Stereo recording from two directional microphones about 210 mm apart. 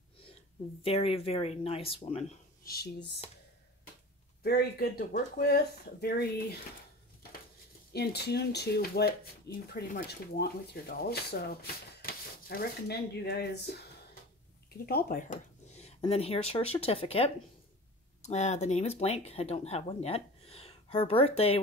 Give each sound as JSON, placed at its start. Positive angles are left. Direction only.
{"t": 0.8, "sound": "speech", "side_deg": 25}
{"t": 2.6, "sound": "speech", "side_deg": 45}
{"t": 4.4, "sound": "speech", "side_deg": 50}
{"t": 7.9, "sound": "speech", "side_deg": 50}
{"t": 14.9, "sound": "speech", "side_deg": 45}